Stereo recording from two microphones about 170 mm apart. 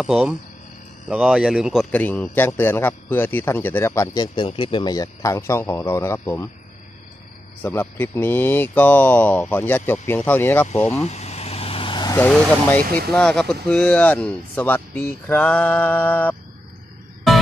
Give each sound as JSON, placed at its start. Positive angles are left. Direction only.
{"t": 0.0, "sound": "a man's voice", "side_deg": -5}
{"t": 7.6, "sound": "a man's voice", "side_deg": 10}
{"t": 11.0, "sound": "vehicle", "side_deg": 40}
{"t": 12.2, "sound": "a man's voice", "side_deg": 10}
{"t": 12.8, "sound": "speech", "side_deg": -60}
{"t": 13.1, "sound": "a man's voice", "side_deg": 5}